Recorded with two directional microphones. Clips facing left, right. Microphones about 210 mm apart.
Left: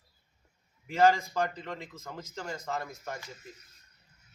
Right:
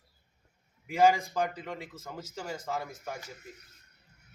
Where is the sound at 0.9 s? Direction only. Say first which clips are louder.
Even; 10° right (ahead or behind).